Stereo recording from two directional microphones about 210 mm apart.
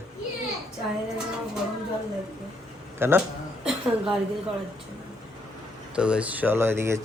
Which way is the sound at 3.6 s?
5° right (ahead or behind).